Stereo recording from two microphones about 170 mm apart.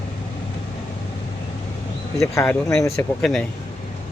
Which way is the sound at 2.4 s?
15° left (ahead or behind).